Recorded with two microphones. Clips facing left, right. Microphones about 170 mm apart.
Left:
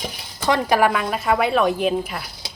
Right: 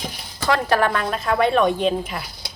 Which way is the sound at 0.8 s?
5° left (ahead or behind).